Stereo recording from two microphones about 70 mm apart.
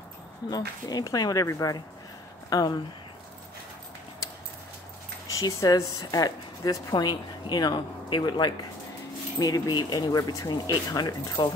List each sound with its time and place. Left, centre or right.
0.5 s speech: left
2.5 s speech: left
5.3 s speech: left
9.4 s speech: left